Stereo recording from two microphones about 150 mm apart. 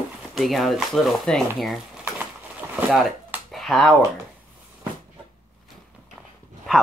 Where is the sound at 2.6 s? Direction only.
20° right (ahead or behind).